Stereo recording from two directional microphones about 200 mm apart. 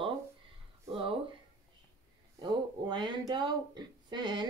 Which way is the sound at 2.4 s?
20° right (ahead or behind).